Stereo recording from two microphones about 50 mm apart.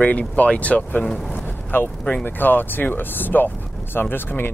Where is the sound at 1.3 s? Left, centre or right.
Left.